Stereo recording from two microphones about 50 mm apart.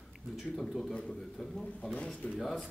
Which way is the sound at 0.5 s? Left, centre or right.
Centre.